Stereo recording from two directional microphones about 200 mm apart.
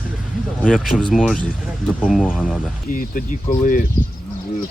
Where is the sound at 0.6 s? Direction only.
5° left (ahead or behind).